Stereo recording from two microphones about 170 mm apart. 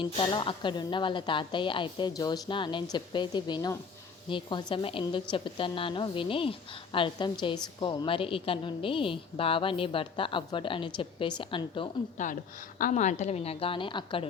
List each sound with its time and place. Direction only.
0.0 s a woman's voice: 30° left (ahead or behind)
12.1 s a woman's voice: 45° left (ahead or behind); by 14.3 s 30° left (ahead or behind)